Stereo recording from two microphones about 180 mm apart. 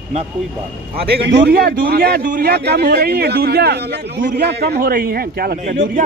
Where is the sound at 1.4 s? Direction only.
55° right (ahead or behind).